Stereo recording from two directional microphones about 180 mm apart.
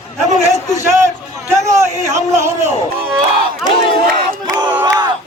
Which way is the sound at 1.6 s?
15° right (ahead or behind).